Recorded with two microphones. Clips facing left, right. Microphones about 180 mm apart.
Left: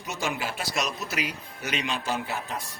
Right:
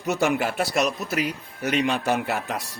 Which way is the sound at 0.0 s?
65° right (ahead or behind).